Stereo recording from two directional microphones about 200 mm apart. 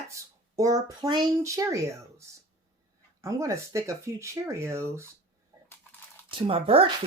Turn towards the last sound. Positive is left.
turn(degrees=-30)  # may be behind; listen again after turning